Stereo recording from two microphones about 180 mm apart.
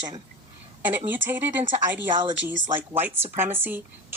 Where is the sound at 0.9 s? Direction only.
10° right (ahead or behind).